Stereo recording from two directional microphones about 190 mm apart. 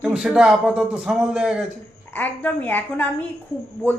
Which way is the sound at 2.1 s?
10° left (ahead or behind).